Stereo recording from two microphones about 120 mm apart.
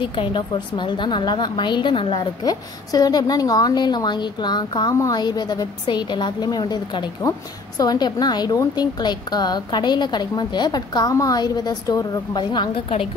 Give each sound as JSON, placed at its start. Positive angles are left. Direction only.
{"t": 0.0, "sound": "a woman's voice", "side_deg": 45}
{"t": 2.4, "sound": "a woman's voice", "side_deg": 30}